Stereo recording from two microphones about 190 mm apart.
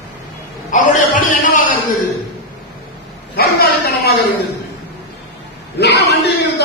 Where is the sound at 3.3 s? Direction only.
55° left (ahead or behind).